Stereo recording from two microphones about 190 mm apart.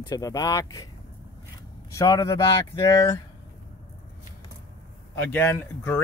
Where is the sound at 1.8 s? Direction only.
15° left (ahead or behind).